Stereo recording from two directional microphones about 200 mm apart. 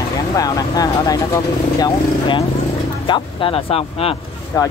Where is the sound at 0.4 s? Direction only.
15° left (ahead or behind).